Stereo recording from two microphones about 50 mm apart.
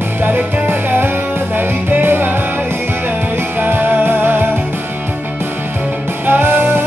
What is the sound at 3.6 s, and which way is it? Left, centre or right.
Music, right.